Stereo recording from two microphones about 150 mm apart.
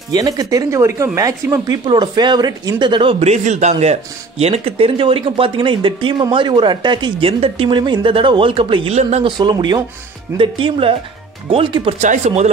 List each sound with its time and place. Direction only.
0.1 s speech: 25° right (ahead or behind); by 9.3 s 45° right (ahead or behind)
9.4 s speech: 30° right (ahead or behind)
12.0 s speech: 50° right (ahead or behind)